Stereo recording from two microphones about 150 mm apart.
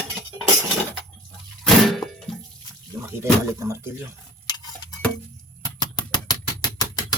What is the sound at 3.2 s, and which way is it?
Speech, 20° right (ahead or behind).